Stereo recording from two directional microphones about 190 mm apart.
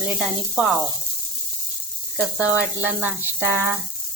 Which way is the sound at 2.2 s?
5° right (ahead or behind).